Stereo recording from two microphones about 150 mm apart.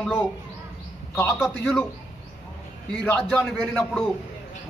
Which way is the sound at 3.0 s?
10° left (ahead or behind).